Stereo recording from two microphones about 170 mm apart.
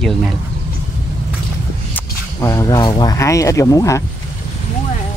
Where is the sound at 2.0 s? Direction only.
20° left (ahead or behind).